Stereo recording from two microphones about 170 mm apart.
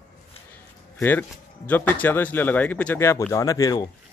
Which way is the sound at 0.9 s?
10° left (ahead or behind).